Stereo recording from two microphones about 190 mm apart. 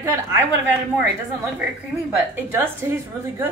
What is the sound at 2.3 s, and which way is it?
Speech, 10° right (ahead or behind).